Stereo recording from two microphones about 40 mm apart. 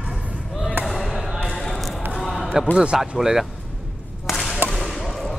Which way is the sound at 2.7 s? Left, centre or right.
Right.